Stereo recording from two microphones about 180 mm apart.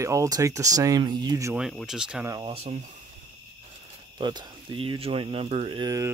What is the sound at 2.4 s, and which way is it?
Speech, 30° right (ahead or behind).